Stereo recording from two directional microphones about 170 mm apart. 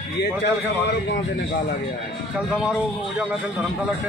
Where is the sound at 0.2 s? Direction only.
90° left.